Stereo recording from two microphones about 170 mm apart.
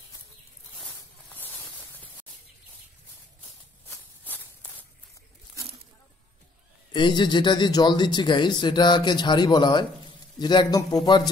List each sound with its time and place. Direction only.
0.7 s a sound: 5° left (ahead or behind)
3.9 s walk: 10° left (ahead or behind)
6.9 s a man's voice: 25° left (ahead or behind)